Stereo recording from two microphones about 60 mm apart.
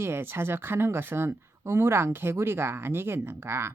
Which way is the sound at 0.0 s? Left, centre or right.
Right.